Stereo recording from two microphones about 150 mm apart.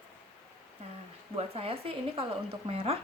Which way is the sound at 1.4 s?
40° right (ahead or behind).